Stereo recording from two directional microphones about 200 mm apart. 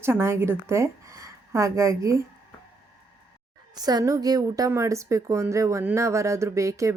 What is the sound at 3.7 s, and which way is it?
A woman's voice, 20° right (ahead or behind).